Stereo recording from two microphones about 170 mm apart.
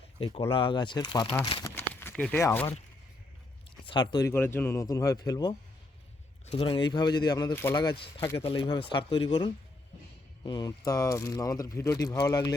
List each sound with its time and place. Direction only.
0.2 s speech: 30° left (ahead or behind)
1.6 s a sound: 15° left (ahead or behind)
2.4 s speech: 15° left (ahead or behind)
3.8 s speech: 25° left (ahead or behind)
6.6 s speech: 30° left (ahead or behind)
7.5 s speech: 15° left (ahead or behind)
7.8 s speech: 30° left (ahead or behind)
8.2 s speech: 15° left (ahead or behind)
8.4 s speech: 30° left (ahead or behind)